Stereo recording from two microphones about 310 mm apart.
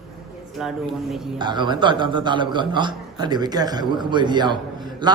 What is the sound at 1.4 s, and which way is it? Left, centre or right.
A man's voice, centre.